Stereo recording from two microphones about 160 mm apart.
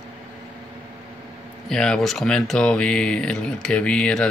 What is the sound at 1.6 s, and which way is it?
Speech, 5° left (ahead or behind).